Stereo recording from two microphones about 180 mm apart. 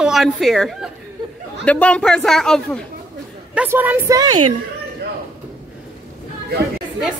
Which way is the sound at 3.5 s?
10° right (ahead or behind).